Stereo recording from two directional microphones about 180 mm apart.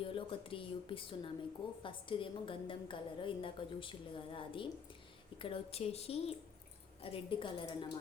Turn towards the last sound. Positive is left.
turn(degrees=25)  # may be behind; listen again after turning